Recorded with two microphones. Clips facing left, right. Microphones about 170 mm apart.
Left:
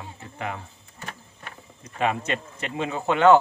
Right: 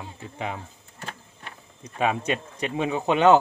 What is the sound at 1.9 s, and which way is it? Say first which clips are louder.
Speech: right 1 dB; 15° right (ahead or behind).